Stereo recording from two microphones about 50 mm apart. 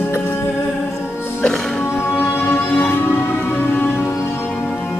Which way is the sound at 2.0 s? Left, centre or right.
Left.